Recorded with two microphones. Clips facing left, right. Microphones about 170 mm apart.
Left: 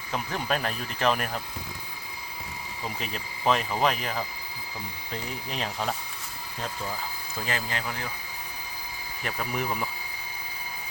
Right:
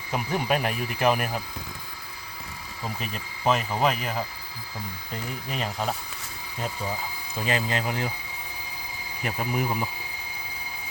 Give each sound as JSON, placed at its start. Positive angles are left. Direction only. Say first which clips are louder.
{"t": 0.1, "sound": "speech", "louder": "right 3 dB", "side_deg": -10}
{"t": 3.0, "sound": "speech", "louder": "right 1 dB", "side_deg": 0}
{"t": 5.5, "sound": "speech", "louder": "right 2 dB", "side_deg": -5}
{"t": 7.3, "sound": "speech", "louder": "right 5 dB", "side_deg": -20}
{"t": 9.5, "sound": "speech", "louder": "right 3 dB", "side_deg": -5}